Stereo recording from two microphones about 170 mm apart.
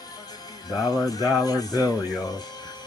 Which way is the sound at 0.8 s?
20° left (ahead or behind).